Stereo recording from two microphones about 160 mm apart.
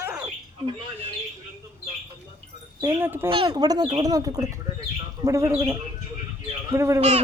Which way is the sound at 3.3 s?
30° right (ahead or behind).